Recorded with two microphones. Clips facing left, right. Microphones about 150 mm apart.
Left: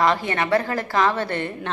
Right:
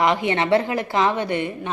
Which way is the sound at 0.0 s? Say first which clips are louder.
Right 1 dB; 15° right (ahead or behind).